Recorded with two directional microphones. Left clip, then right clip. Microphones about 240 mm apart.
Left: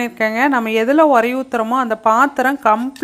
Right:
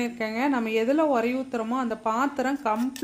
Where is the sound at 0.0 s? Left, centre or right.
Left.